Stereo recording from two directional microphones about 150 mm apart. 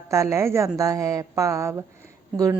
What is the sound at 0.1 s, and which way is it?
A woman's voice, 20° right (ahead or behind).